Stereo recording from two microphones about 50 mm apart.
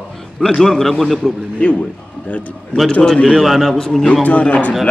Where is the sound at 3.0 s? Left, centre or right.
Centre.